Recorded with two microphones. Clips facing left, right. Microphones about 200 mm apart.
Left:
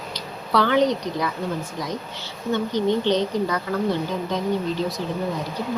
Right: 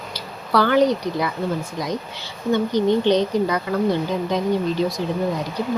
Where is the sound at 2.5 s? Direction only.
15° right (ahead or behind).